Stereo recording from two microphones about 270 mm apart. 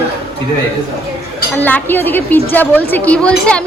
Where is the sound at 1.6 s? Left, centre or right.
Centre.